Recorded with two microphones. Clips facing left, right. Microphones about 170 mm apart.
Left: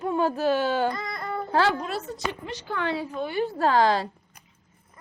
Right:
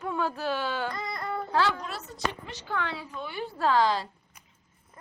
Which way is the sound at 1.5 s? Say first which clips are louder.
Left 4 dB; 55° left (ahead or behind).